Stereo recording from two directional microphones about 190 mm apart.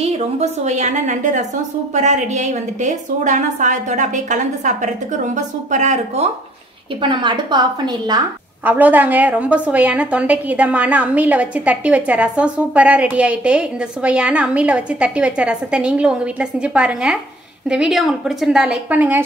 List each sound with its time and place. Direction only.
0.0 s a woman's voice: 35° right (ahead or behind)
8.6 s a woman's voice: 10° right (ahead or behind)